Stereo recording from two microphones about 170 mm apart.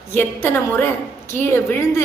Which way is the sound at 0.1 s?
15° left (ahead or behind).